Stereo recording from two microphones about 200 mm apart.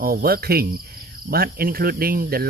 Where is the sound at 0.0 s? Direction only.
50° right (ahead or behind).